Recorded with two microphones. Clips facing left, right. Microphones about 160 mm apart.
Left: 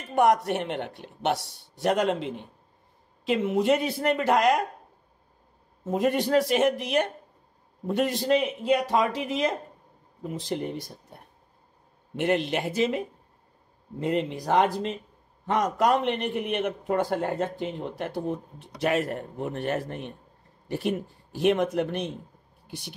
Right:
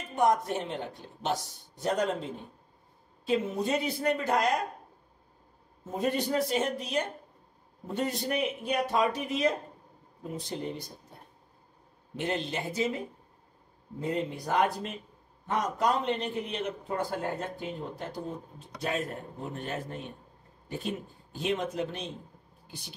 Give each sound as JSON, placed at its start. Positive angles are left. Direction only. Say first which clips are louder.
{"t": 0.1, "sound": "a man's voice", "louder": "left 4 dB", "side_deg": 75}
{"t": 3.3, "sound": "a woman's voice", "louder": "left 6 dB", "side_deg": 90}
{"t": 5.9, "sound": "a man's voice", "louder": "left 5 dB", "side_deg": 75}
{"t": 12.2, "sound": "a man's voice", "louder": "left 7 dB", "side_deg": 70}
{"t": 13.9, "sound": "a man's voice", "louder": "left 5 dB", "side_deg": 80}
{"t": 15.4, "sound": "a man's voice", "louder": "left 5 dB", "side_deg": 80}